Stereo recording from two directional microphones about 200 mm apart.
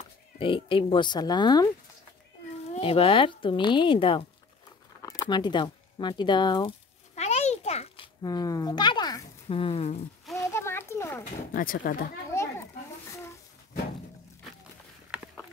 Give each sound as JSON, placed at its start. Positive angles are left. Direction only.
{"t": 0.4, "sound": "a woman's voice", "side_deg": 25}
{"t": 2.7, "sound": "a woman's voice", "side_deg": 30}
{"t": 7.2, "sound": "a sound", "side_deg": 35}
{"t": 10.5, "sound": "a sound", "side_deg": 10}
{"t": 11.5, "sound": "speech", "side_deg": 45}
{"t": 12.3, "sound": "children playing", "side_deg": 15}